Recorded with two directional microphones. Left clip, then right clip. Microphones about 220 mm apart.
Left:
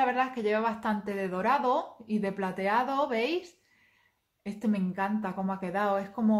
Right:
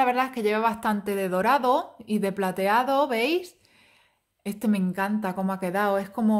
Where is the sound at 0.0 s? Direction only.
40° right (ahead or behind).